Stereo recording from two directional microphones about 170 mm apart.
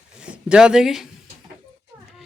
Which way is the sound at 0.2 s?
5° right (ahead or behind).